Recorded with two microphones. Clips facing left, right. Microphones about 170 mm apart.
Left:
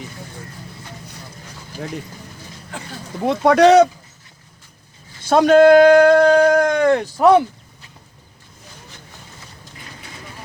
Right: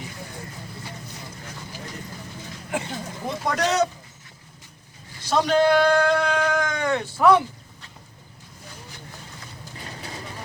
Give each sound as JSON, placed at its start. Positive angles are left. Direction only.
{"t": 3.2, "sound": "speech", "side_deg": 75}
{"t": 5.3, "sound": "speech", "side_deg": 50}